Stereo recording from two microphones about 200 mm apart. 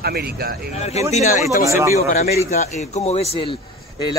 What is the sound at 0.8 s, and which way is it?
Speech, 30° left (ahead or behind).